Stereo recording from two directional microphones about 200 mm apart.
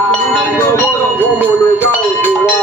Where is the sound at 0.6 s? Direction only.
15° left (ahead or behind).